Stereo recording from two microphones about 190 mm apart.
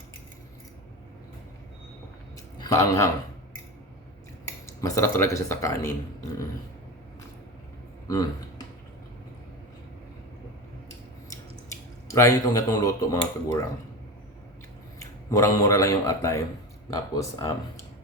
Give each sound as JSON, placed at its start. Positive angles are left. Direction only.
{"t": 2.6, "sound": "a man's voice", "side_deg": 15}
{"t": 4.8, "sound": "speech", "side_deg": 15}
{"t": 8.0, "sound": "a sound", "side_deg": 20}
{"t": 12.0, "sound": "speech", "side_deg": 15}
{"t": 14.9, "sound": "speech", "side_deg": 15}